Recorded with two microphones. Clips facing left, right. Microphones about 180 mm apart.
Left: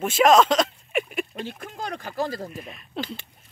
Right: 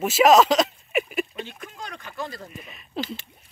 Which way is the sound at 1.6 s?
35° left (ahead or behind).